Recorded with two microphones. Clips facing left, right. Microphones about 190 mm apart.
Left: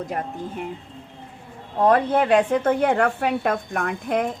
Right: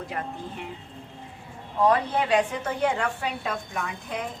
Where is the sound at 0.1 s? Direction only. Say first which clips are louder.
Left 5 dB; 45° left (ahead or behind).